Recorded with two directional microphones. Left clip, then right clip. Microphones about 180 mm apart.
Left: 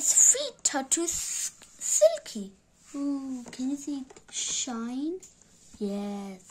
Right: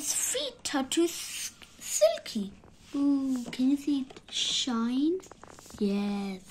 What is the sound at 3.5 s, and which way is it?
Speech, 25° left (ahead or behind).